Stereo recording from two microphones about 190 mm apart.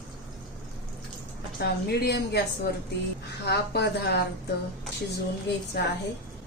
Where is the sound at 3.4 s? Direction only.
60° left (ahead or behind).